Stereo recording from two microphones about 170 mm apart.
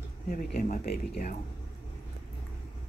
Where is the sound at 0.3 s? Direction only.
55° left (ahead or behind).